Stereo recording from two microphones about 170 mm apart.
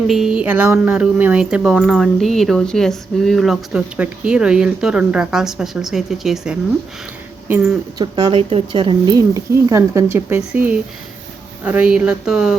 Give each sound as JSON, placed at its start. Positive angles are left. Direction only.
{"t": 0.1, "sound": "speech", "side_deg": -5}
{"t": 7.9, "sound": "speech", "side_deg": -25}